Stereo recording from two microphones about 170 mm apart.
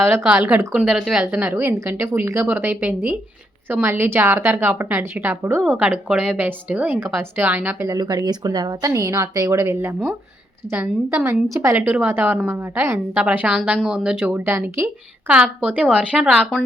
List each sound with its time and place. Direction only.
0.0 s a woman's voice: 15° right (ahead or behind)